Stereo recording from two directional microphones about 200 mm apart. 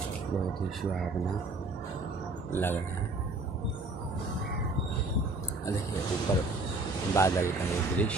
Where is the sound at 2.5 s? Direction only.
10° left (ahead or behind).